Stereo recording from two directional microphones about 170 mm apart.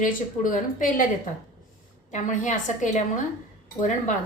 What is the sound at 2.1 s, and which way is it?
Speech, 45° left (ahead or behind).